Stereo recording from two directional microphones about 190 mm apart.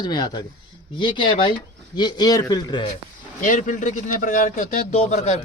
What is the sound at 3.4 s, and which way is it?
A man's voice, 45° left (ahead or behind).